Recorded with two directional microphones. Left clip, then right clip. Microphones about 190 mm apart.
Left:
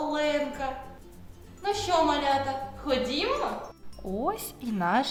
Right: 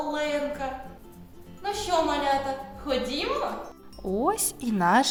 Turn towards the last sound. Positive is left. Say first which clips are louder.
# right 5 dB
turn(degrees=-35)  # may be behind; listen again after turning